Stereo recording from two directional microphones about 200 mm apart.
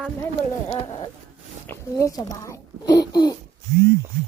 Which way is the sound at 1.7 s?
15° left (ahead or behind).